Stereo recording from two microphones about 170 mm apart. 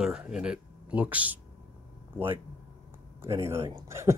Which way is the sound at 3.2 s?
15° right (ahead or behind).